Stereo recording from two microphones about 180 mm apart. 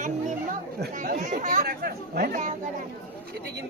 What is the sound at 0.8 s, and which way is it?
Chatter, 55° right (ahead or behind).